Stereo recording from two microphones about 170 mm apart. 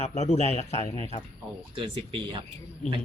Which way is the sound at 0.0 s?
40° left (ahead or behind).